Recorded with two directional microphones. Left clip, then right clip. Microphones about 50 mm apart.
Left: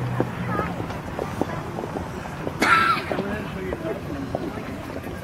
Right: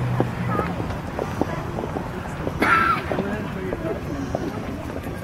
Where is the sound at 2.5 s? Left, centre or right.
Left.